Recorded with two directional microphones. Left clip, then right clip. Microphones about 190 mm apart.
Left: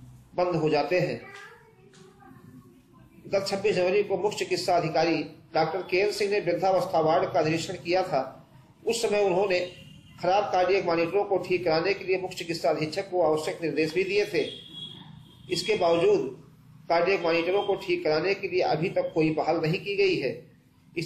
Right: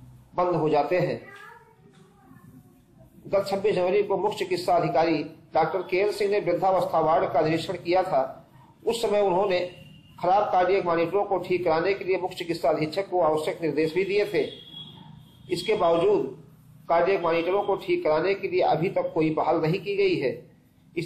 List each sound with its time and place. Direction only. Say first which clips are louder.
0.4 s a man's voice: right 2 dB; 10° left (ahead or behind)
3.3 s a man's voice: right 2 dB; 10° left (ahead or behind)
15.5 s a man's voice: right 1 dB; 10° left (ahead or behind)
19.7 s a man's voice: right 2 dB; 35° right (ahead or behind)